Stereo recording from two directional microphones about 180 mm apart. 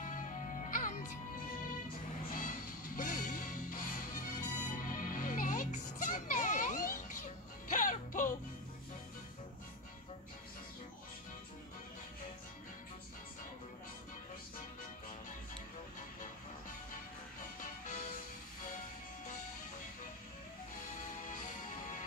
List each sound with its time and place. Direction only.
0.0 s music: 45° left (ahead or behind)
3.0 s music: 45° left (ahead or behind)
17.6 s music: 40° left (ahead or behind)
21.2 s music: 45° left (ahead or behind)